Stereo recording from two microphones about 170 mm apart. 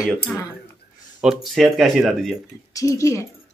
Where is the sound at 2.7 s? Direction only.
20° left (ahead or behind).